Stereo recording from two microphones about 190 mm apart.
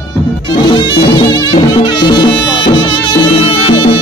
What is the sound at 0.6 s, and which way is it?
Music, 25° left (ahead or behind).